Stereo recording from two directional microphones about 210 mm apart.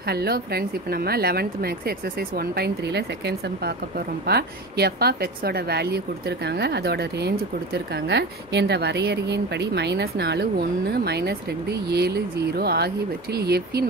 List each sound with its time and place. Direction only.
0.0 s a woman's voice: 50° right (ahead or behind)